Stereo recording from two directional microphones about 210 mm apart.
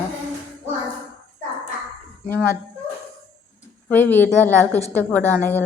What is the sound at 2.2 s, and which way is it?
Speech, 10° left (ahead or behind).